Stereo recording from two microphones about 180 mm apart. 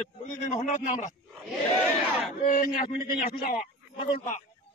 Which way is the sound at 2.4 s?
50° left (ahead or behind).